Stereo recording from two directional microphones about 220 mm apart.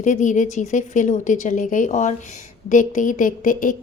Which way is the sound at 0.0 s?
35° left (ahead or behind).